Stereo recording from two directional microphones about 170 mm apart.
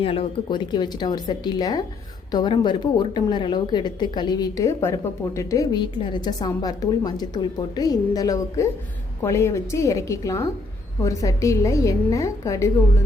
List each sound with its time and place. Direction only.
0.0 s a woman's voice: 30° left (ahead or behind)